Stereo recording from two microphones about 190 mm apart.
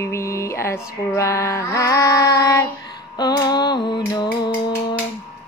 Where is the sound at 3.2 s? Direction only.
20° left (ahead or behind).